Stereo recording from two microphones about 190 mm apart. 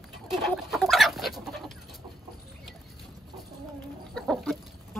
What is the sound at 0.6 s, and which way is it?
Chicken, centre (ahead or behind).